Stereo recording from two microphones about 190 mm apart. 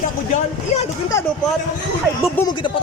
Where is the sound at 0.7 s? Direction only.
35° left (ahead or behind).